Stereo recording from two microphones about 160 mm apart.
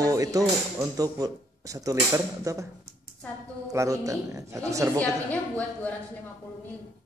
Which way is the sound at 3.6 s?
20° right (ahead or behind).